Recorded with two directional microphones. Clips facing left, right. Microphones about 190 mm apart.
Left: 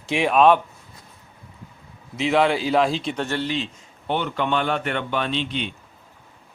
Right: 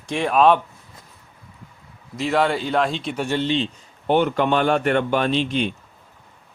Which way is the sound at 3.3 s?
20° right (ahead or behind).